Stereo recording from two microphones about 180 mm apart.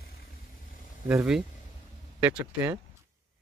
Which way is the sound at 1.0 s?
5° right (ahead or behind).